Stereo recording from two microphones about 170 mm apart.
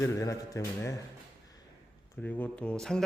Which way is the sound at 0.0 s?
20° left (ahead or behind).